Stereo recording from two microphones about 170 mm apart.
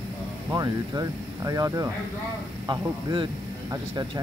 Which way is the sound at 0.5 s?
20° right (ahead or behind).